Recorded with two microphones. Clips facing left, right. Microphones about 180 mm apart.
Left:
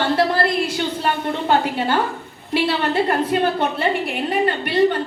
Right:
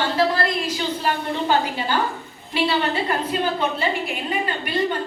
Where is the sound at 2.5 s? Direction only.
60° left (ahead or behind).